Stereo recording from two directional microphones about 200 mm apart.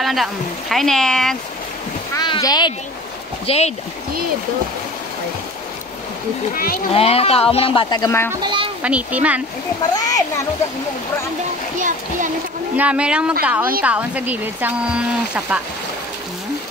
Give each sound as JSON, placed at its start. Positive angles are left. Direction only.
{"t": 0.0, "sound": "speech", "side_deg": 0}
{"t": 2.1, "sound": "a sound", "side_deg": 20}
{"t": 3.4, "sound": "speech", "side_deg": 30}
{"t": 6.5, "sound": "speech", "side_deg": 50}
{"t": 6.9, "sound": "speech", "side_deg": 30}
{"t": 8.3, "sound": "speech", "side_deg": -25}
{"t": 8.8, "sound": "speech", "side_deg": -5}
{"t": 9.9, "sound": "speech", "side_deg": 20}
{"t": 12.7, "sound": "speech", "side_deg": -5}